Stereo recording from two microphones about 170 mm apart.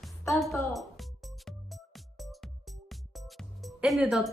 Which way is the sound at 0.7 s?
Centre (ahead or behind).